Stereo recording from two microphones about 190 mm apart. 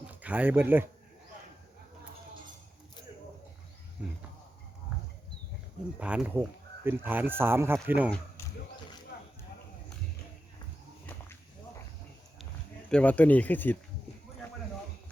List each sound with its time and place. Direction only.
0.1 s speech: 10° right (ahead or behind)
6.0 s speech: 5° right (ahead or behind)
9.1 s a sound: 55° left (ahead or behind)
12.9 s speech: 5° left (ahead or behind)